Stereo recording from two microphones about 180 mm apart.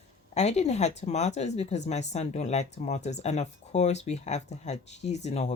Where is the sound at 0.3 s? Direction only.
40° left (ahead or behind).